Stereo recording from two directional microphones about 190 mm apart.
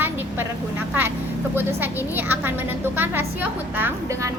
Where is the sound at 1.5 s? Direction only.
10° right (ahead or behind).